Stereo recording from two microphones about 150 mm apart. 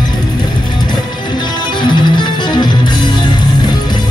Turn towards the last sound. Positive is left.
turn(degrees=30)  # may be behind; listen again after turning